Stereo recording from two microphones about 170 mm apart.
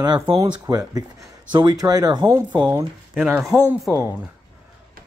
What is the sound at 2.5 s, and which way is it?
Speech, 10° right (ahead or behind).